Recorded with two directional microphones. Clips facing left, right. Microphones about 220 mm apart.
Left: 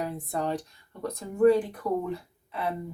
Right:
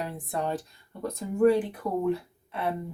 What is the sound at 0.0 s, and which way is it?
Speech, centre (ahead or behind).